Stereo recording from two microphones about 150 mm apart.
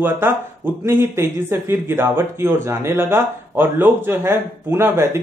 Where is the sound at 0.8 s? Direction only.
15° right (ahead or behind).